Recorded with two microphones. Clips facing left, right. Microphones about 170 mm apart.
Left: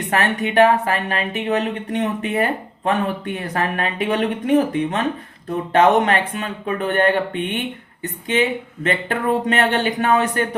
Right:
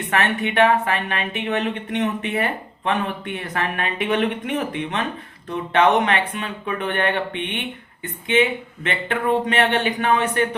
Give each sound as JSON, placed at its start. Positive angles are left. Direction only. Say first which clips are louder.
{"t": 0.1, "sound": "speech", "louder": "left 2 dB", "side_deg": 40}